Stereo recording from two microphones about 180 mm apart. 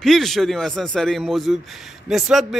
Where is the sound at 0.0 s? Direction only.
Centre (ahead or behind).